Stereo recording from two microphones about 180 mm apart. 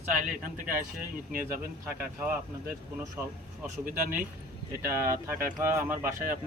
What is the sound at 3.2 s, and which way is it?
Speech, 10° right (ahead or behind).